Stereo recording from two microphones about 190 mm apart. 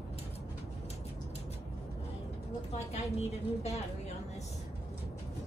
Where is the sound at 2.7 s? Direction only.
35° left (ahead or behind).